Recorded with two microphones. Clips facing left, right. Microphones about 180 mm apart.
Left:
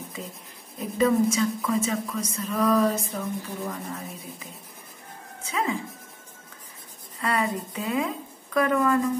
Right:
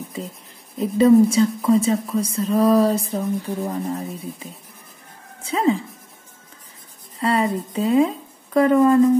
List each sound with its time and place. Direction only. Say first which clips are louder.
0.7 s speech: right 8 dB; 30° right (ahead or behind)
7.2 s speech: right 6 dB; 30° right (ahead or behind)